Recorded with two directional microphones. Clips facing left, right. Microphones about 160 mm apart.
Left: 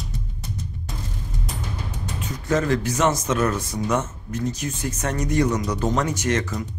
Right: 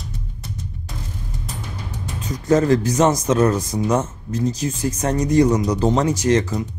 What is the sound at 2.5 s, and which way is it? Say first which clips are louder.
Speech: right 6 dB; 40° right (ahead or behind).